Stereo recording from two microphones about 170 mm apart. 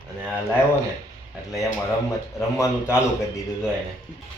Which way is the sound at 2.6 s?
15° left (ahead or behind).